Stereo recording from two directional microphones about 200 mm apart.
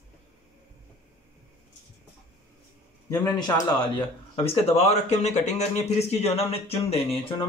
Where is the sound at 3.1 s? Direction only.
20° left (ahead or behind).